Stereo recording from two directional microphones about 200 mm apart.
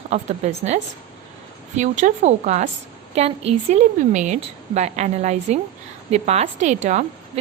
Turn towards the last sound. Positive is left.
turn(degrees=-35)  # may be behind; listen again after turning